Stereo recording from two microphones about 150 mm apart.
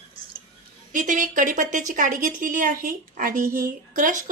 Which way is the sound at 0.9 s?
60° right (ahead or behind).